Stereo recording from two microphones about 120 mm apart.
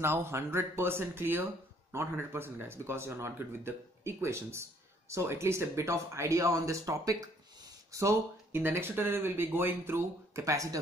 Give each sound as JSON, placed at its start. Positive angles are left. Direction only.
{"t": 0.0, "sound": "speech", "side_deg": -20}